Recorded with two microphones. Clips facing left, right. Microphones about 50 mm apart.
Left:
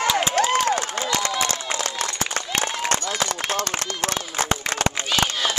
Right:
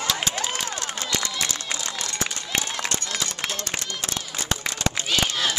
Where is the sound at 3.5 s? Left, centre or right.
Left.